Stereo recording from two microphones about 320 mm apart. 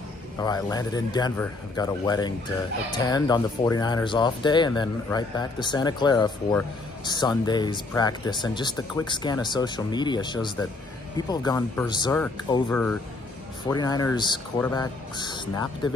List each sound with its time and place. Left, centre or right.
0.4 s speech: centre